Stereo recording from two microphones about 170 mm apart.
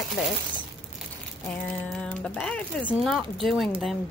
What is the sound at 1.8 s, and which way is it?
A woman's voice, 5° left (ahead or behind).